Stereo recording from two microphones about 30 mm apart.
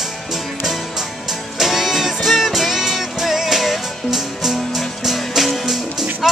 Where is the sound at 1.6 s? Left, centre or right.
Centre.